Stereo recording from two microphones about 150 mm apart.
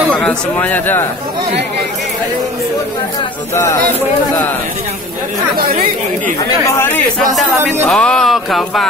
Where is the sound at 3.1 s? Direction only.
25° left (ahead or behind).